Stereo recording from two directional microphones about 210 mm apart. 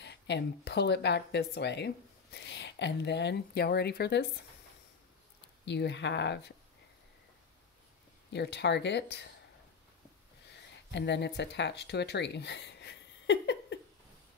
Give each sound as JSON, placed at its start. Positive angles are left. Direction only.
{"t": 0.0, "sound": "speech", "side_deg": 55}
{"t": 5.7, "sound": "speech", "side_deg": 55}
{"t": 8.3, "sound": "speech", "side_deg": 55}
{"t": 10.9, "sound": "speech", "side_deg": 55}